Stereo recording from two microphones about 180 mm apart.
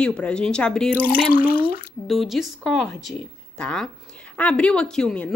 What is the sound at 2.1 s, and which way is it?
Speech, centre (ahead or behind).